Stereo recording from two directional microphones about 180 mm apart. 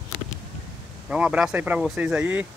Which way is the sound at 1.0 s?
5° right (ahead or behind).